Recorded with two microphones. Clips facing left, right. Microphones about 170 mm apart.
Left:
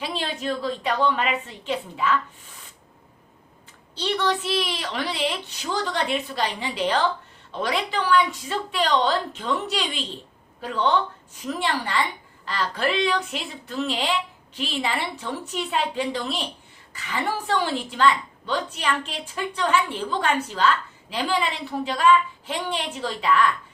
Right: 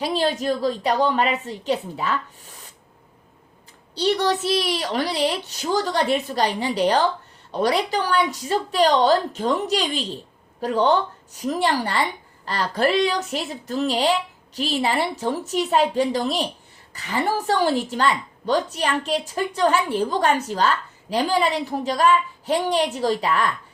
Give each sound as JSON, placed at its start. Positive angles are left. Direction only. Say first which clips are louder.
{"t": 0.0, "sound": "a woman's voice", "louder": "right 7 dB", "side_deg": -40}
{"t": 3.9, "sound": "a woman's voice", "louder": "right 4 dB", "side_deg": -40}